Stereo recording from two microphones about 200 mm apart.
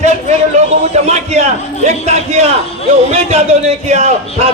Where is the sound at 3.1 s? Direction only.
30° right (ahead or behind).